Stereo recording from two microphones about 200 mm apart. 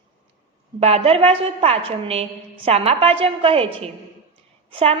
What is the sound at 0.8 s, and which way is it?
A woman's voice, 30° right (ahead or behind).